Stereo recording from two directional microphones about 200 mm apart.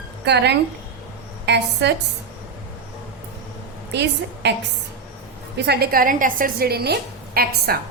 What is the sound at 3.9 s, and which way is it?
Speech, 60° right (ahead or behind).